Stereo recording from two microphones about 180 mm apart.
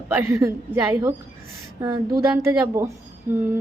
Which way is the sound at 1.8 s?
20° right (ahead or behind).